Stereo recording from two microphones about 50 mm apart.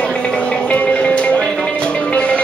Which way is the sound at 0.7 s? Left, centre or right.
Left.